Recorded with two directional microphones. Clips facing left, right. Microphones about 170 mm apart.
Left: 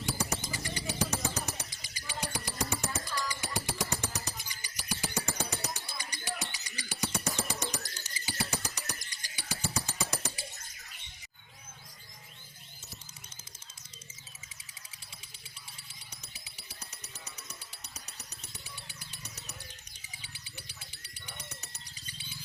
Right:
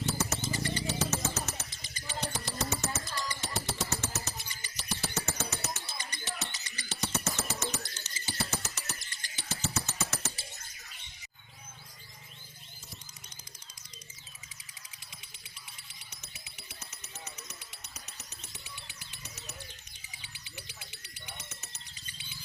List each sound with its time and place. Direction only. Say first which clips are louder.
0.0 s bird: right 2 dB; 10° left (ahead or behind)
7.8 s bird: right 1 dB; 40° left (ahead or behind)
8.1 s a sound: even; 15° left (ahead or behind)
15.9 s music: even; 35° left (ahead or behind)
21.3 s music: left 3 dB; 35° left (ahead or behind)